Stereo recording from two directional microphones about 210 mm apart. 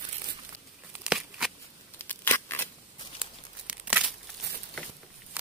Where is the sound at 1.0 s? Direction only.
5° right (ahead or behind).